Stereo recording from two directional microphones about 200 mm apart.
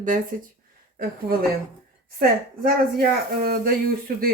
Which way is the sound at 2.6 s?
50° right (ahead or behind).